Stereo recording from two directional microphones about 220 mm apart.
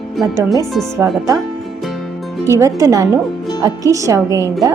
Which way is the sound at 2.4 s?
15° right (ahead or behind).